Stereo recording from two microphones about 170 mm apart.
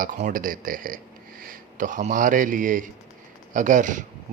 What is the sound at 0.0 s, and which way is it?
A man's voice, 50° right (ahead or behind).